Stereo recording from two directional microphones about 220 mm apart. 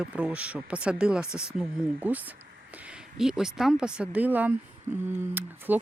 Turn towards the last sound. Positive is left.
turn(degrees=-10)  # may be behind; listen again after turning